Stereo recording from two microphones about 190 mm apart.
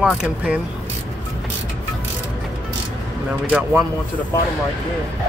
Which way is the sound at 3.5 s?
5° right (ahead or behind).